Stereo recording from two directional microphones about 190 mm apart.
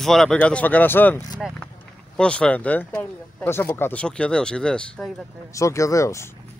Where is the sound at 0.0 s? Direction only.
Centre (ahead or behind).